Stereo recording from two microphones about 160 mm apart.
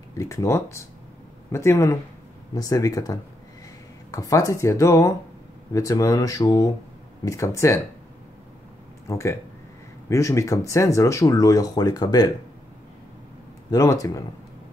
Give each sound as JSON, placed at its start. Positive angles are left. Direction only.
{"t": 0.2, "sound": "speech", "side_deg": 20}
{"t": 9.0, "sound": "speech", "side_deg": 20}
{"t": 13.7, "sound": "speech", "side_deg": 20}